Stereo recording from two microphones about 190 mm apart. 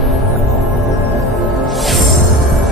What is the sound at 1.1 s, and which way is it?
Music, centre (ahead or behind).